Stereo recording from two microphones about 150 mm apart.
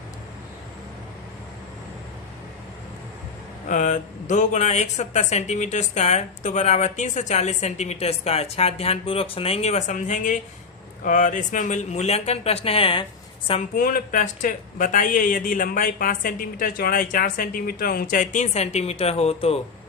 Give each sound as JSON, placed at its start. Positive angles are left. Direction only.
{"t": 3.7, "sound": "speech", "side_deg": 55}
{"t": 13.7, "sound": "speech", "side_deg": 65}